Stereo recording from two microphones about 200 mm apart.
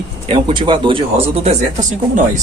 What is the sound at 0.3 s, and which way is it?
Speech, 25° right (ahead or behind).